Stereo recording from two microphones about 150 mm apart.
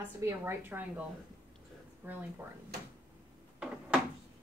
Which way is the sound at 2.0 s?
10° right (ahead or behind).